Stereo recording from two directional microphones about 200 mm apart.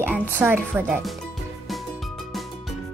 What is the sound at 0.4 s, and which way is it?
Speech, 10° right (ahead or behind).